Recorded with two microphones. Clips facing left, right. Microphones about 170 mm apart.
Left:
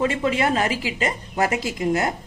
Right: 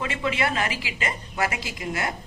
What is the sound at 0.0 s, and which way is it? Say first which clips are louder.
A woman's voice: left 5 dB; 40° left (ahead or behind).